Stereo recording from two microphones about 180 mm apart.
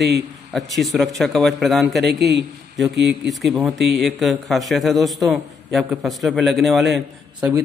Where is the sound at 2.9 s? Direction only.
70° right (ahead or behind).